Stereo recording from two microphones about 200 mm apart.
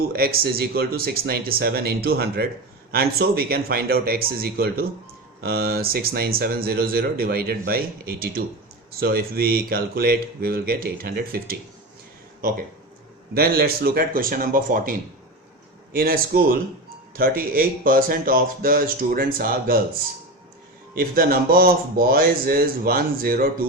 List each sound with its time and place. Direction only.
0.1 s speech: 50° right (ahead or behind)
13.3 s speech: 50° right (ahead or behind)
20.9 s speech: 50° right (ahead or behind)